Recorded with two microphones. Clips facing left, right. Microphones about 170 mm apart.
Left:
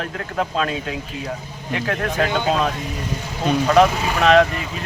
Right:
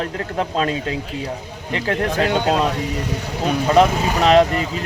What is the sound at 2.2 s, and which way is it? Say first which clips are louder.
Speech: right 2 dB; 70° right (ahead or behind).